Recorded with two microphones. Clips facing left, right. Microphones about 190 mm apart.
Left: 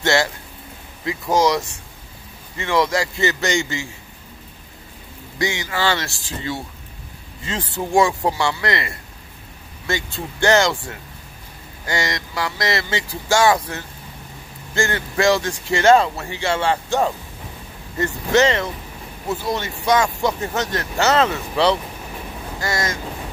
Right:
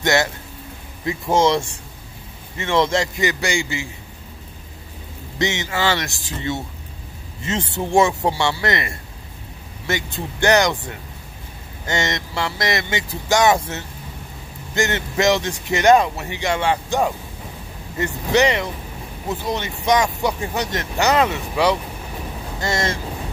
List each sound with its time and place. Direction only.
0.0 s a sound: 20° right (ahead or behind)
1.0 s speech: 25° right (ahead or behind)
5.4 s speech: 20° right (ahead or behind)
22.6 s speech: 25° right (ahead or behind)